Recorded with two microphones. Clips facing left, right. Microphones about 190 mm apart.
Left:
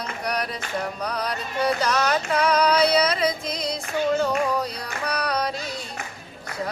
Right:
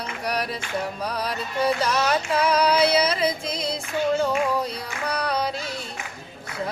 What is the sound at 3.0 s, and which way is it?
Music, 30° right (ahead or behind).